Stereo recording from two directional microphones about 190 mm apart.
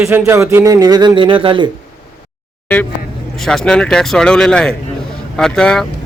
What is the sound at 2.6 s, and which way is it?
Speech, 10° left (ahead or behind).